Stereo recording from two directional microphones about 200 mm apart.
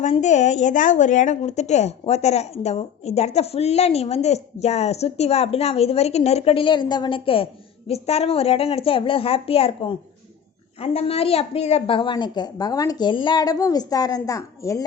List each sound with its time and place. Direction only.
0.2 s a woman's voice: 35° left (ahead or behind); by 14.8 s 15° left (ahead or behind)